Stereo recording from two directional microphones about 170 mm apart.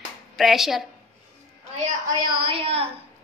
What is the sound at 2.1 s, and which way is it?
Speech, 30° right (ahead or behind).